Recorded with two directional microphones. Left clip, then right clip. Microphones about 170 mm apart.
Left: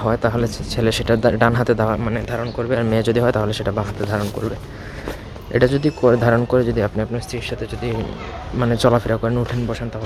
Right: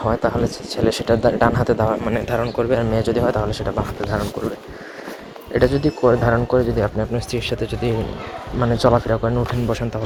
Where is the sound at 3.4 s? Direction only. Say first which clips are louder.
Left 1 dB; 25° left (ahead or behind).